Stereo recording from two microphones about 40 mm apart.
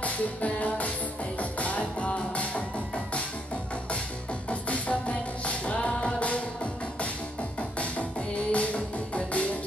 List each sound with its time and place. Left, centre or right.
0.0 s music: left
4.5 s music: left